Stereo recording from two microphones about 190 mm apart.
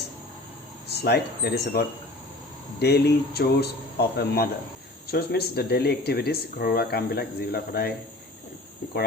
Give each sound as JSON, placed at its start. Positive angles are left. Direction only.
{"t": 0.9, "sound": "speech", "side_deg": 60}